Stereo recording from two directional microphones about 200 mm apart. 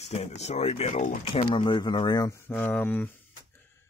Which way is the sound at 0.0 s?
35° left (ahead or behind).